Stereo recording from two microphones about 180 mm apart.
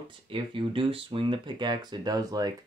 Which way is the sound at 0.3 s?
30° right (ahead or behind).